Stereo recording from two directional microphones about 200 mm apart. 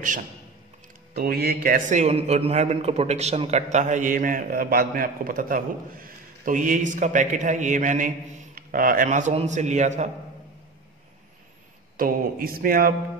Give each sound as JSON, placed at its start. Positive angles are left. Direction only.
{"t": 1.1, "sound": "a man's voice", "side_deg": -50}
{"t": 12.0, "sound": "speech", "side_deg": -45}